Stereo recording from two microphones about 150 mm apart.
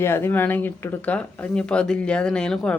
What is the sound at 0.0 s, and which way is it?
Speech, 15° left (ahead or behind).